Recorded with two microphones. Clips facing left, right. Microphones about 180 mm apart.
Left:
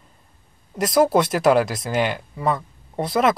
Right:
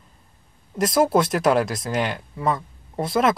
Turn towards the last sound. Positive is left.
turn(degrees=0)  # may be behind; listen again after turning